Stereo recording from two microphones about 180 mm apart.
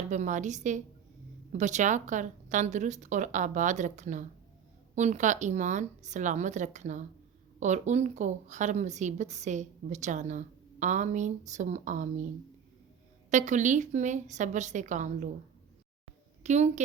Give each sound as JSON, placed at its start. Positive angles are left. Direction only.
{"t": 0.1, "sound": "a woman's voice", "side_deg": -45}
{"t": 13.3, "sound": "a woman's voice", "side_deg": -40}
{"t": 16.4, "sound": "a woman's voice", "side_deg": -40}